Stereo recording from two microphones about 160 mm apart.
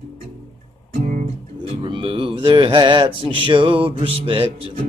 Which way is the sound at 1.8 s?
30° right (ahead or behind).